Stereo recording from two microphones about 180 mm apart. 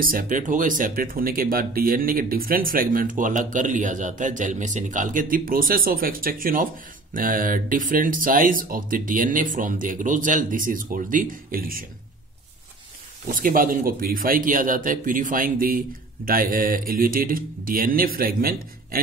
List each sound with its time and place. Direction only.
0.0 s speech: 50° right (ahead or behind)
13.3 s speech: 50° right (ahead or behind)